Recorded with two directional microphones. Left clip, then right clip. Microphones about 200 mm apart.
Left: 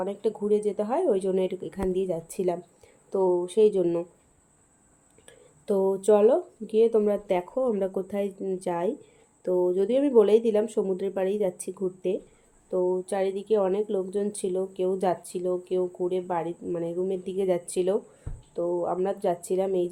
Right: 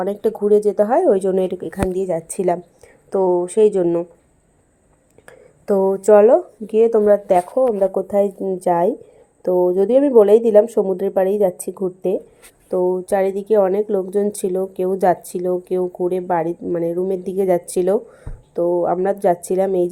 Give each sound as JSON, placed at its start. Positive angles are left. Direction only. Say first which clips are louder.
{"t": 0.0, "sound": "speech", "louder": "right 9 dB", "side_deg": -30}
{"t": 2.0, "sound": "speech", "louder": "right 9 dB", "side_deg": 0}
{"t": 5.7, "sound": "speech", "louder": "right 8 dB", "side_deg": -15}
{"t": 6.0, "sound": "speech", "louder": "right 10 dB", "side_deg": -5}
{"t": 7.6, "sound": "speech", "louder": "right 10 dB", "side_deg": 0}